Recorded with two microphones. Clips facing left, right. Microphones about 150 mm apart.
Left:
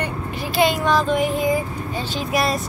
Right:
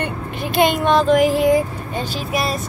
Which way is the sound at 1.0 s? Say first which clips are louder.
Right 5 dB; 90° right.